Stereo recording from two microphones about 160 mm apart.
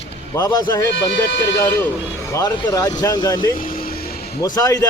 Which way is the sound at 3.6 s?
65° left (ahead or behind).